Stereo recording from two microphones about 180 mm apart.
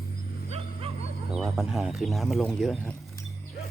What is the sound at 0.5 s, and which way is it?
Wild animals, 35° right (ahead or behind).